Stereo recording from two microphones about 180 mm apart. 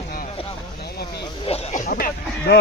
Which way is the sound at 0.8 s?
60° left (ahead or behind).